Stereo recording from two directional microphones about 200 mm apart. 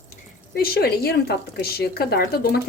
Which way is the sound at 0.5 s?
50° left (ahead or behind).